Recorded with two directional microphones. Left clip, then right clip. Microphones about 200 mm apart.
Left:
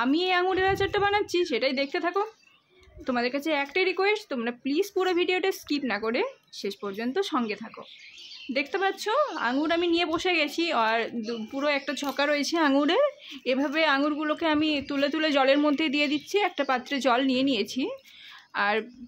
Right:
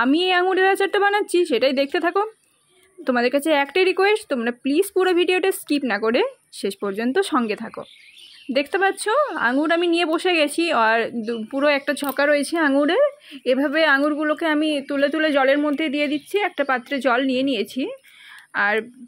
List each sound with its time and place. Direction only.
0.0 s speech: 30° right (ahead or behind)